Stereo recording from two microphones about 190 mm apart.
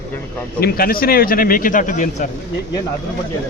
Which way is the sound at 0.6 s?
50° left (ahead or behind).